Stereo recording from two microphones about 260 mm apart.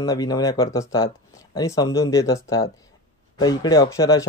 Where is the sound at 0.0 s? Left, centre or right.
Centre.